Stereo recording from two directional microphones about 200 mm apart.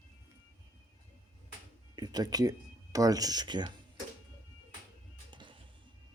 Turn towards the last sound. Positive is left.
turn(degrees=-25)  # may be behind; listen again after turning